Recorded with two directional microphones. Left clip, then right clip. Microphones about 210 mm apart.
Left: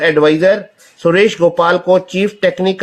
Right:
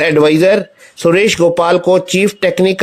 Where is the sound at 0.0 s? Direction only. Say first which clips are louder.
Right 1 dB; 35° right (ahead or behind).